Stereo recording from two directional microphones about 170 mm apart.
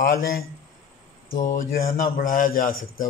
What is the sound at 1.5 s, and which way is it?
Speech, 50° left (ahead or behind).